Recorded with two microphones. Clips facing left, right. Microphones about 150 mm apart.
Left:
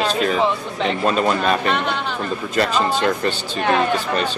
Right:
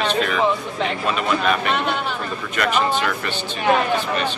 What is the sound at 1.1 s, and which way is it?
Speech, 35° left (ahead or behind).